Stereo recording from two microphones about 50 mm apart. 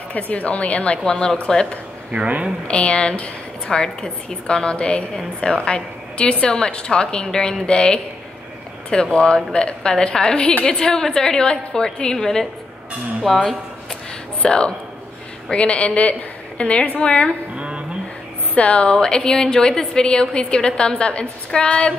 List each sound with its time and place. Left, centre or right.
0.1 s a woman's voice: left
2.1 s a woman's voice: right
2.7 s a woman's voice: centre
14.4 s a woman's voice: centre
17.6 s mantra: right
18.5 s a woman's voice: left